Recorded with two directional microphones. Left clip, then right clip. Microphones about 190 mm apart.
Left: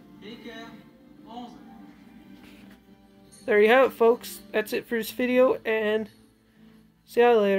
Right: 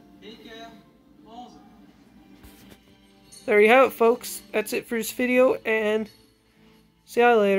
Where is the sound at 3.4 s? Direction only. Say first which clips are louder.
Right 2 dB; 15° right (ahead or behind).